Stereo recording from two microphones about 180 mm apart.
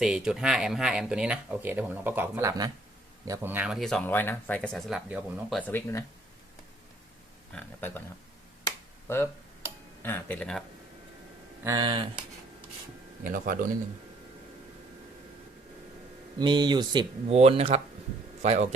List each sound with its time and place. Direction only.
0.0 s speech: 5° right (ahead or behind)
5.5 s speech: 10° left (ahead or behind)
7.5 s speech: 10° left (ahead or behind)
9.0 s speech: 15° left (ahead or behind)
11.6 s speech: 20° right (ahead or behind)
13.2 s a man's voice: 50° right (ahead or behind)
16.4 s speech: 25° right (ahead or behind)
17.3 s speech: 35° right (ahead or behind)